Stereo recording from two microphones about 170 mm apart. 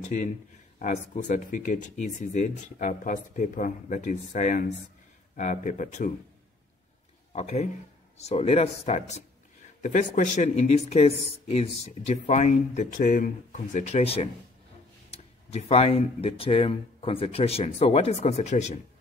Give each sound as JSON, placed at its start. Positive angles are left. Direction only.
{"t": 0.0, "sound": "speech", "side_deg": 45}
{"t": 7.3, "sound": "speech", "side_deg": 40}